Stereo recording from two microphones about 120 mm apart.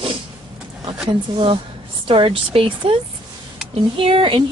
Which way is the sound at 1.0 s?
50° right (ahead or behind).